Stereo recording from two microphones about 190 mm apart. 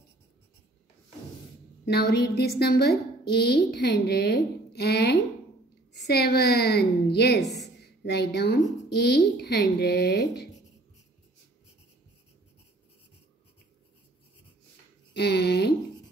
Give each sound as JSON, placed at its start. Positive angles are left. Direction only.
{"t": 1.9, "sound": "a woman's voice", "side_deg": 60}
{"t": 15.1, "sound": "a woman's voice", "side_deg": 60}